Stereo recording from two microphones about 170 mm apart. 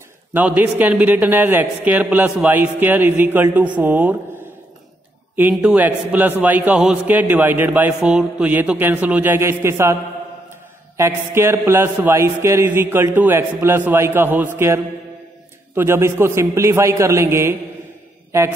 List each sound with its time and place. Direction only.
0.3 s a man's voice: 10° right (ahead or behind)
5.6 s a man's voice: 10° right (ahead or behind)
11.0 s a man's voice: 15° right (ahead or behind)
15.7 s a man's voice: 15° right (ahead or behind)